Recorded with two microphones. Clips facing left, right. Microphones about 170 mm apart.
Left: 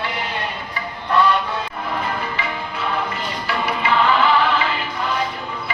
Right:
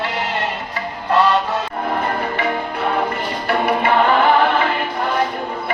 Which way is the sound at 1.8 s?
50° right (ahead or behind).